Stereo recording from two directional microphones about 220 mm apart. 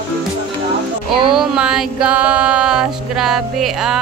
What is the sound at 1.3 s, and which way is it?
Music, 5° right (ahead or behind).